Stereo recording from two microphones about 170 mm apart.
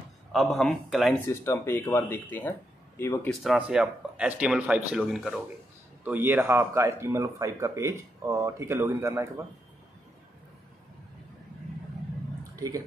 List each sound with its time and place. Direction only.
0.3 s speech: centre (ahead or behind)
1.2 s speech: 15° left (ahead or behind)
3.3 s speech: 5° right (ahead or behind)
6.0 s speech: 10° right (ahead or behind)
12.5 s speech: 20° right (ahead or behind)